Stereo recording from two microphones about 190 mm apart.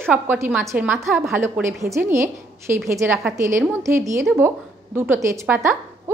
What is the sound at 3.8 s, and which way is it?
A woman's voice, 15° right (ahead or behind).